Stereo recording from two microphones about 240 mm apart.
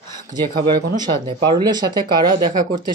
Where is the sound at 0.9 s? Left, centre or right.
Centre.